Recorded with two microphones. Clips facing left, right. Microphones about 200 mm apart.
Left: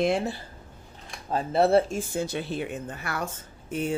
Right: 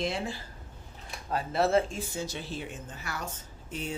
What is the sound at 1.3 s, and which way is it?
Speech, 30° left (ahead or behind).